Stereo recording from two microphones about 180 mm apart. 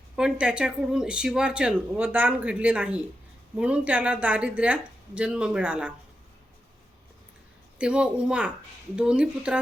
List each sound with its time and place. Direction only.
0.2 s speech: 5° right (ahead or behind)
7.8 s speech: 5° right (ahead or behind)